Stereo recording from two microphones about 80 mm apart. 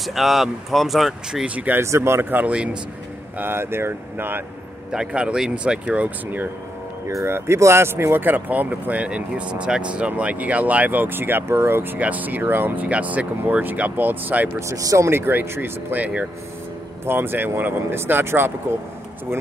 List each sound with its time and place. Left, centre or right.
0.0 s speech: centre
1.4 s speech: centre
1.8 s speech: right; by 2.8 s centre
3.3 s speech: right
4.9 s speech: centre
7.1 s speech: right
14.7 s speech: right; by 16.3 s centre
17.0 s speech: right